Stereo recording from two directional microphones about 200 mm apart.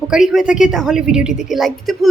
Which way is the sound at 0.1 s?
Centre (ahead or behind).